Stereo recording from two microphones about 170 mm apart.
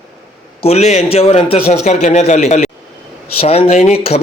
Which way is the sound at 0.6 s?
40° left (ahead or behind).